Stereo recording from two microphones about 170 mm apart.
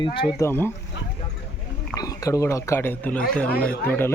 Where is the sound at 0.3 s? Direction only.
15° left (ahead or behind).